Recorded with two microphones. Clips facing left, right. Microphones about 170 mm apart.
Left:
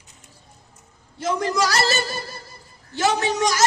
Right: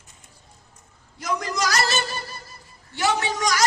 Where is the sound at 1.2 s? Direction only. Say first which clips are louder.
Left 4 dB; 30° left (ahead or behind).